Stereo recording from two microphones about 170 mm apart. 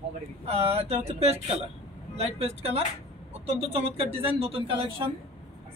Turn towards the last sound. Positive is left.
turn(degrees=-30)  # may be behind; listen again after turning